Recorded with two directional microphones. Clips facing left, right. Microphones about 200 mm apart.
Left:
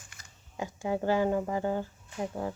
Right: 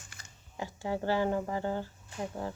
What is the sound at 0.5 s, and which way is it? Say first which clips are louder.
Speech: left 3 dB; 20° left (ahead or behind).